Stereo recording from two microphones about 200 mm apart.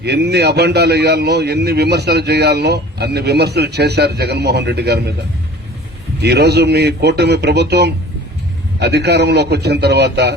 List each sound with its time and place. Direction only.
0.0 s a man's voice: 55° right (ahead or behind)
6.2 s a man's voice: 55° right (ahead or behind)